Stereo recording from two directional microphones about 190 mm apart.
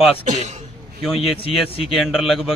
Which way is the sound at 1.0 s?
Centre (ahead or behind).